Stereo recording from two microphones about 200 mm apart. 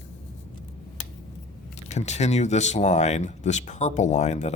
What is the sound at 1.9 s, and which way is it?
Speech, 35° left (ahead or behind).